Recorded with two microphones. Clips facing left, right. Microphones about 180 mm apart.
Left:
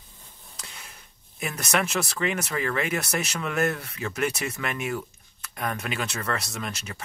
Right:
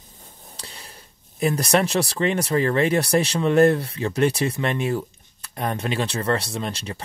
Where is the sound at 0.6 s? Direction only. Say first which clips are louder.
Right 3 dB; 35° right (ahead or behind).